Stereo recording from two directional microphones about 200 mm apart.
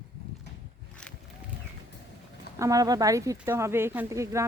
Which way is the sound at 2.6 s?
15° right (ahead or behind).